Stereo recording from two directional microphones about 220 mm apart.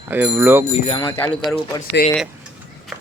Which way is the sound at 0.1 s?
10° right (ahead or behind).